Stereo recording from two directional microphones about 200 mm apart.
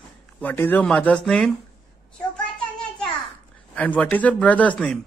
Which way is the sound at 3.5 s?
5° left (ahead or behind).